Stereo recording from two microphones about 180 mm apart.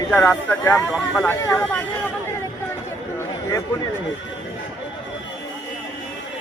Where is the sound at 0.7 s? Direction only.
Centre (ahead or behind).